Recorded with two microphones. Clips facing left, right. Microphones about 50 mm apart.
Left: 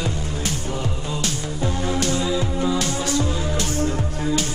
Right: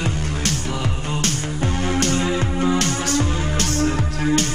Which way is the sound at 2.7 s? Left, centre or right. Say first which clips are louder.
Right 2 dB; right.